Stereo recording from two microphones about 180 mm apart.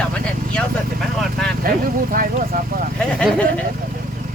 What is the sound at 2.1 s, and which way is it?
Speech, 50° right (ahead or behind).